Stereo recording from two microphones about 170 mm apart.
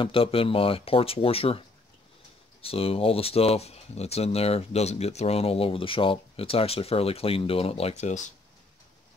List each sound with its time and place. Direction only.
0.0 s speech: 35° left (ahead or behind)
2.6 s speech: 35° left (ahead or behind)